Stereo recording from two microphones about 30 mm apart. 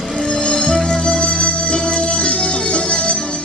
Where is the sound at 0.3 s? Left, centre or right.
Left.